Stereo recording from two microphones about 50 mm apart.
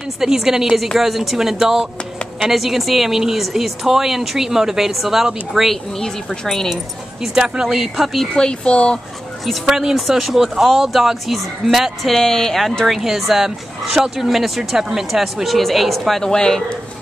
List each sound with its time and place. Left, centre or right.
0.2 s a woman's voice: centre
6.4 s speech: centre
7.2 s a woman's voice: centre
8.4 s speech: centre
9.5 s speech: centre
16.3 s speech: centre